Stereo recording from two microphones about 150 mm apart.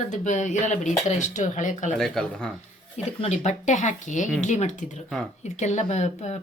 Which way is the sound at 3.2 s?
50° left (ahead or behind).